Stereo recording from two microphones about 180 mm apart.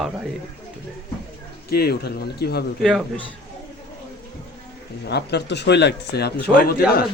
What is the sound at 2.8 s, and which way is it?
Speech, centre (ahead or behind).